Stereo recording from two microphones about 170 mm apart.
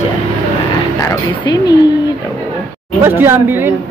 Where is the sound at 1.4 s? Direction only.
25° left (ahead or behind).